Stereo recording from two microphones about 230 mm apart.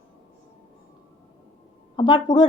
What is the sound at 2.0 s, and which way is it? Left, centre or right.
Speech, centre.